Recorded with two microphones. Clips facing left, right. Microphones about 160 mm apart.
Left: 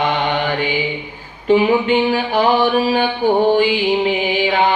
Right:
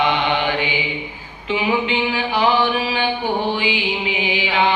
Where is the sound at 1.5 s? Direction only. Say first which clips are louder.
Left 7 dB; 45° left (ahead or behind).